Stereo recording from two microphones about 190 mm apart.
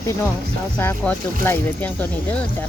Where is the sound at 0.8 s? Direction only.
10° left (ahead or behind).